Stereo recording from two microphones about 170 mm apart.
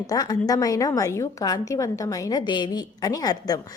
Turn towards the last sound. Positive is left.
turn(degrees=20)  # may be behind; listen again after turning